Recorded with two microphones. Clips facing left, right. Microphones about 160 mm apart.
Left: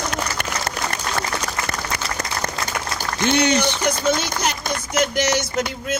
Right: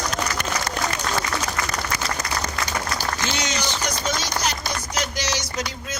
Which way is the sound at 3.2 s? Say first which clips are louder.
Left 9 dB; 60° left (ahead or behind).